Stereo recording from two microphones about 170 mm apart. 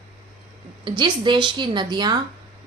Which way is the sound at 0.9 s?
25° right (ahead or behind).